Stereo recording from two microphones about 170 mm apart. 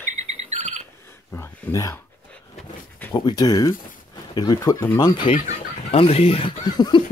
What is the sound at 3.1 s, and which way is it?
Speech, 25° left (ahead or behind).